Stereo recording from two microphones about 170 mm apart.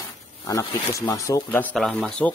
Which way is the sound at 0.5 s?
20° left (ahead or behind).